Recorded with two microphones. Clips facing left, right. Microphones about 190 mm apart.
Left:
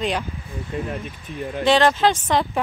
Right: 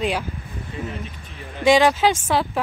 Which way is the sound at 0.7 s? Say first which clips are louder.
Left 4 dB; 50° left (ahead or behind).